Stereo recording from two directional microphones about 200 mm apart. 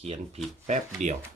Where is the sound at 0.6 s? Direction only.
35° right (ahead or behind).